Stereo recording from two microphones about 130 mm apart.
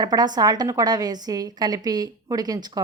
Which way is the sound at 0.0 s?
30° right (ahead or behind).